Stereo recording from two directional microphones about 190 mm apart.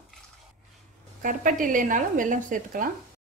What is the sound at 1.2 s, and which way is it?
A woman's voice, 45° right (ahead or behind).